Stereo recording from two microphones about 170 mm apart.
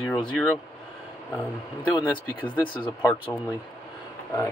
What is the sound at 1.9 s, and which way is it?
Speech, 10° right (ahead or behind).